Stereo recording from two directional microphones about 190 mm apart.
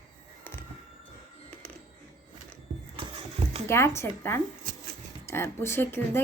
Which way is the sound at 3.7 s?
15° left (ahead or behind).